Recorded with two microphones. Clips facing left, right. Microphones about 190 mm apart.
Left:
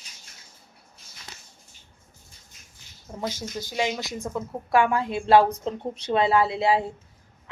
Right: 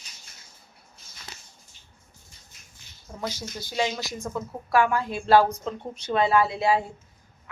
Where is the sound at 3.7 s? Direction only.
15° left (ahead or behind).